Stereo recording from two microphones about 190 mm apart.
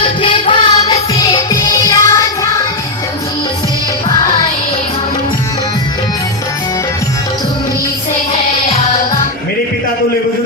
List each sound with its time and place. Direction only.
0.0 s music: 25° left (ahead or behind)